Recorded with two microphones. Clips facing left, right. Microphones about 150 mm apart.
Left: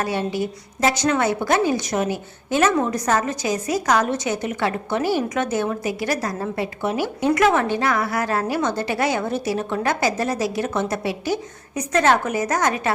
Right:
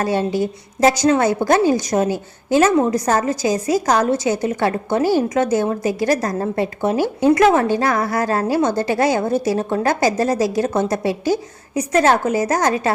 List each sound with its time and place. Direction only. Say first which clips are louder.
0.0 s a woman's voice: right 5 dB; 40° right (ahead or behind)
7.3 s a woman's voice: right 4 dB; 30° right (ahead or behind)
11.3 s a woman's voice: right 5 dB; 30° right (ahead or behind)